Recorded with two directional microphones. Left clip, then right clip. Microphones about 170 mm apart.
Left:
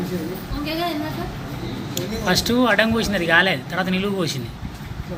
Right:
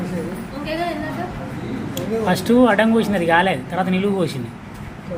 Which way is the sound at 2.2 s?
20° right (ahead or behind).